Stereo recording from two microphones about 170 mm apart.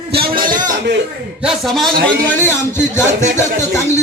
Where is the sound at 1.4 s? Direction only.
Centre (ahead or behind).